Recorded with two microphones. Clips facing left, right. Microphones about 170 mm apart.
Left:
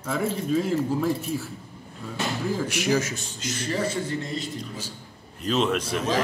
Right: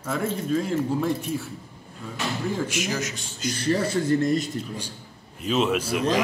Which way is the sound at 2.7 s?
55° left (ahead or behind).